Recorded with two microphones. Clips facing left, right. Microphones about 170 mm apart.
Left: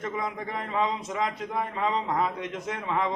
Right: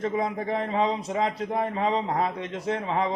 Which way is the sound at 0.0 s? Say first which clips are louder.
Right 5 dB; 30° right (ahead or behind).